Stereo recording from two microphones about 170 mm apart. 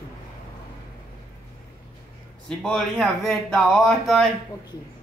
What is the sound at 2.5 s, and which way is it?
Speech, 5° left (ahead or behind).